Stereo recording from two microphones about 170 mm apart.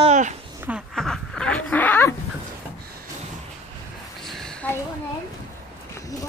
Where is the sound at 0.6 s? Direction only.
5° right (ahead or behind); by 2.2 s 15° left (ahead or behind).